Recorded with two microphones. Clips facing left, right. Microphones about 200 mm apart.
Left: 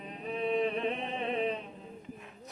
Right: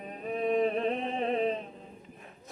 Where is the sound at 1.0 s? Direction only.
35° right (ahead or behind).